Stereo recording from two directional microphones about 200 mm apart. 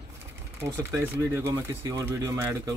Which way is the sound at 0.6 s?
15° right (ahead or behind).